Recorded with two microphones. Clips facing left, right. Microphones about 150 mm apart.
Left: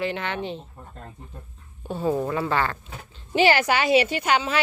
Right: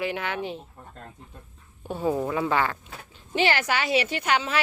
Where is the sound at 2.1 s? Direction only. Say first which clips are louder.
Even; centre (ahead or behind).